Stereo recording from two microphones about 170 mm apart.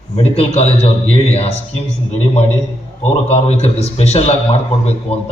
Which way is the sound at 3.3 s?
40° left (ahead or behind).